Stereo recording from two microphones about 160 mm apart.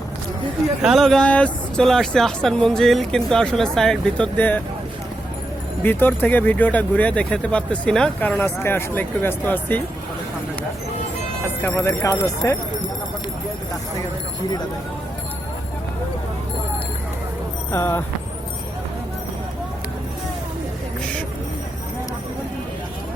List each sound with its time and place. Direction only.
0.8 s speech: centre (ahead or behind)
5.8 s speech: 10° left (ahead or behind)
11.4 s speech: 15° left (ahead or behind)
17.7 s speech: 15° left (ahead or behind)